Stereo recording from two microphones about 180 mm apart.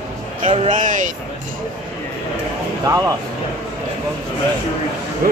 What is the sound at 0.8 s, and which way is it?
Speech, 45° right (ahead or behind).